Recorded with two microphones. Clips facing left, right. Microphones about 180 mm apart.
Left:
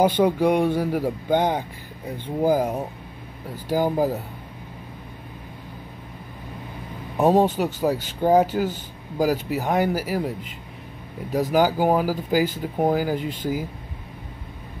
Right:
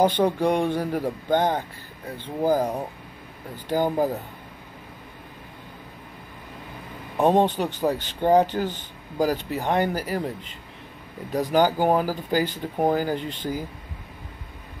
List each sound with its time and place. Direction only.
0.0 s speech: 10° left (ahead or behind)
7.2 s speech: 5° left (ahead or behind)
11.5 s speech: 5° left (ahead or behind)